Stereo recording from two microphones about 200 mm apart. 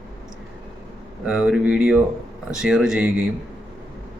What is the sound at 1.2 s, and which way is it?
Speech, 5° right (ahead or behind).